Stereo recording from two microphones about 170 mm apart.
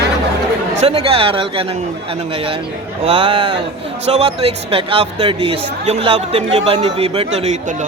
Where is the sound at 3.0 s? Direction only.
30° right (ahead or behind).